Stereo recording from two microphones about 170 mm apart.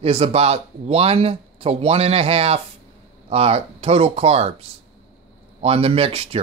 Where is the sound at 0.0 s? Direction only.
35° right (ahead or behind).